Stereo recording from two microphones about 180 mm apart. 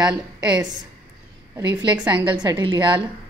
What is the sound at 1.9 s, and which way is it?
A woman's voice, 25° right (ahead or behind).